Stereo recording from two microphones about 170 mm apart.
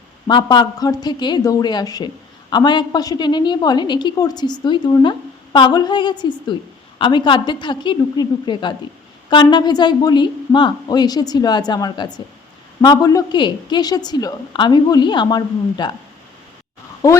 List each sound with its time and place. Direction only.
0.3 s a woman's voice: 25° left (ahead or behind)